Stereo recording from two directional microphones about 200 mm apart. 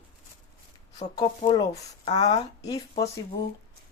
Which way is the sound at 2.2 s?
30° left (ahead or behind).